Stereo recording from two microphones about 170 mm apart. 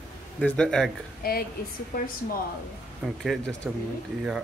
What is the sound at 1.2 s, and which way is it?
Speech, 65° left (ahead or behind).